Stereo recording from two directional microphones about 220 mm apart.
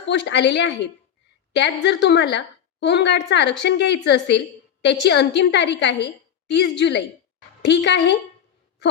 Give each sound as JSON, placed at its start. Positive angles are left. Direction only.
{"t": 0.0, "sound": "a woman's voice", "side_deg": 55}